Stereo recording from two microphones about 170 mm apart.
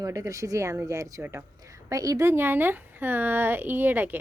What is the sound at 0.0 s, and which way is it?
A woman's voice, 20° right (ahead or behind).